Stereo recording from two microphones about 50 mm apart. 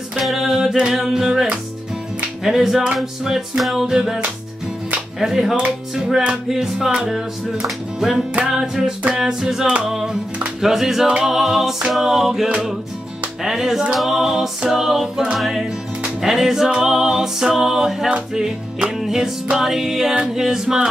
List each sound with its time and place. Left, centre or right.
0.2 s singing: centre
2.4 s music: centre
3.0 s music: centre
5.2 s music: centre